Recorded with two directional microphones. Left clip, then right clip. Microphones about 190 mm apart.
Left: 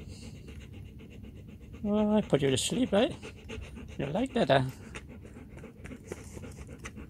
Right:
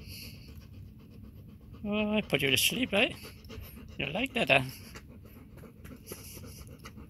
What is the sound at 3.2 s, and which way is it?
Dog, 15° left (ahead or behind).